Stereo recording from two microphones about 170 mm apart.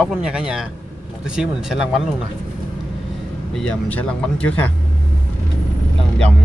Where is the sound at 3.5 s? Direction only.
5° left (ahead or behind).